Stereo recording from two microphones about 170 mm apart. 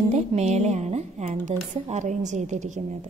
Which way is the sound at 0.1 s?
40° right (ahead or behind).